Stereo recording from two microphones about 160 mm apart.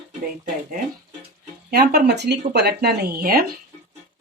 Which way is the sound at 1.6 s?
75° right (ahead or behind).